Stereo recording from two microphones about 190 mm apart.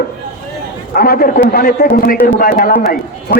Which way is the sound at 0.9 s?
50° left (ahead or behind).